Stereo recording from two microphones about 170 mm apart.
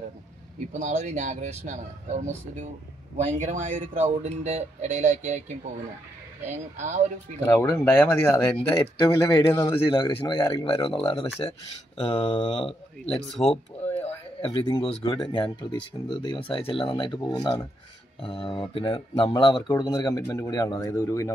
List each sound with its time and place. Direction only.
0.7 s speech: 45° right (ahead or behind)
6.4 s speech: 45° right (ahead or behind)
7.3 s speech: 15° left (ahead or behind)
8.7 s speech: 30° left (ahead or behind)
9.3 s speech: 15° left (ahead or behind)
9.8 s speech: 30° left (ahead or behind)
13.1 s speech: centre (ahead or behind)
14.0 s speech: 25° left (ahead or behind)